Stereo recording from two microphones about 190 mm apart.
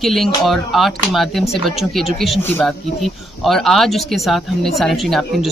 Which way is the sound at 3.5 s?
Centre (ahead or behind).